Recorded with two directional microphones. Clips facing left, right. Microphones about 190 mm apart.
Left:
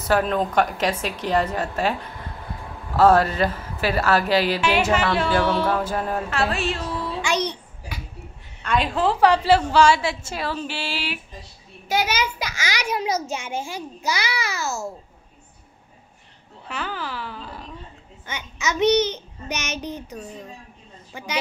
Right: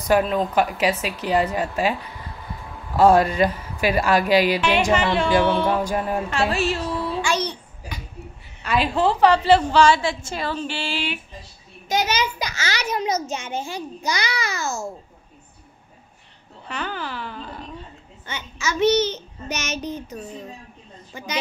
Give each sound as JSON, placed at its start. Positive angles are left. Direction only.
{"t": 0.0, "sound": "a woman's voice", "side_deg": -10}
{"t": 3.0, "sound": "a woman's voice", "side_deg": -10}
{"t": 4.6, "sound": "a child's voice", "side_deg": 5}
{"t": 5.7, "sound": "a woman's voice", "side_deg": -15}
{"t": 6.5, "sound": "a woman's voice", "side_deg": 0}
{"t": 7.2, "sound": "babbling", "side_deg": 15}
{"t": 8.6, "sound": "speech", "side_deg": -5}
{"t": 9.2, "sound": "a child's voice", "side_deg": 10}
{"t": 16.6, "sound": "speech", "side_deg": 5}
{"t": 18.2, "sound": "a child's voice", "side_deg": 15}